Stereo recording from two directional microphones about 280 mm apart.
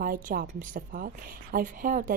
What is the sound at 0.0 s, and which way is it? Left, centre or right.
A woman's voice, right.